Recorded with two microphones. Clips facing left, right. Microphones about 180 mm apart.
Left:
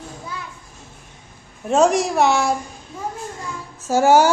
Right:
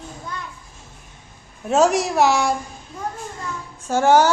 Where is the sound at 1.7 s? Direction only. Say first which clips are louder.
Left 1 dB; centre (ahead or behind).